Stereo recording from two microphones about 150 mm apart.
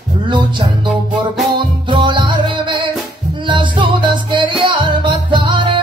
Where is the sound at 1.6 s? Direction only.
35° right (ahead or behind).